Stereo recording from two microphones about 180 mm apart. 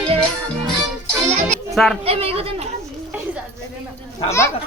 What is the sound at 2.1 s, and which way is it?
Speech, 35° right (ahead or behind).